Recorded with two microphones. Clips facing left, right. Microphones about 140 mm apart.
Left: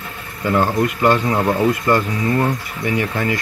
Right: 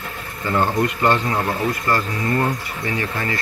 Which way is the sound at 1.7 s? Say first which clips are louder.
Left 5 dB; 20° left (ahead or behind).